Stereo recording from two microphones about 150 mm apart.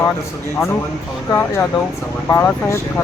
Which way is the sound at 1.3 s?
15° left (ahead or behind).